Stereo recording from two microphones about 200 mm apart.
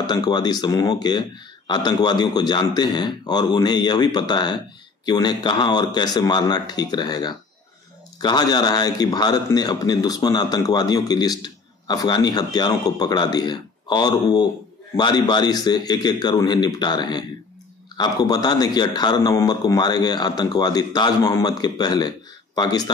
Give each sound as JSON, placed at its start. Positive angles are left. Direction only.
{"t": 0.0, "sound": "a man's voice", "side_deg": 20}